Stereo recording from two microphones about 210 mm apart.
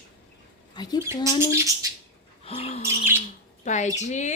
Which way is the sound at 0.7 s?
20° left (ahead or behind).